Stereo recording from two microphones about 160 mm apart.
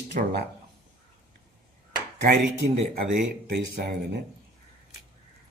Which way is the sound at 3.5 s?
90° right.